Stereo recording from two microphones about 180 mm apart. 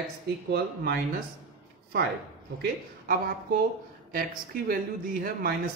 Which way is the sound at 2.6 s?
55° right (ahead or behind).